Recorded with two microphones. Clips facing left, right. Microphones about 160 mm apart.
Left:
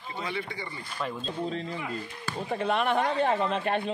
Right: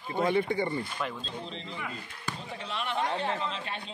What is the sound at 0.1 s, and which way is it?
Speech, 50° right (ahead or behind).